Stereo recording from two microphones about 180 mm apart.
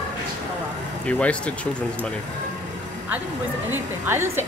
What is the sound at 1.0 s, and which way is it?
Speech, 5° left (ahead or behind).